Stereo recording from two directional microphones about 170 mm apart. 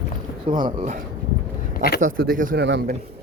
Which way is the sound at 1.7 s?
65° left (ahead or behind).